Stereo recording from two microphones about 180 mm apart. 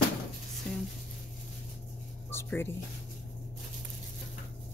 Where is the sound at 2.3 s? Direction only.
10° left (ahead or behind).